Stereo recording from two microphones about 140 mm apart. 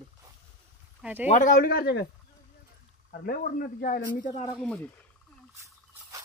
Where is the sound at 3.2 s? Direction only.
90° left.